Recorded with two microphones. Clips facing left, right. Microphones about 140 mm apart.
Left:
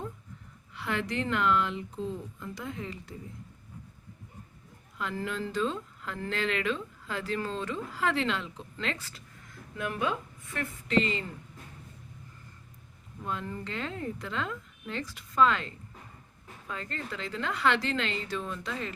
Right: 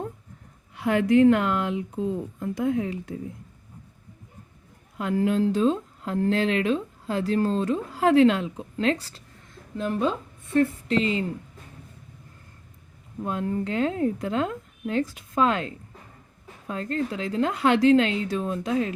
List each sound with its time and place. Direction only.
0.7 s speech: 50° right (ahead or behind)
4.9 s speech: 45° right (ahead or behind)
13.2 s speech: 50° right (ahead or behind)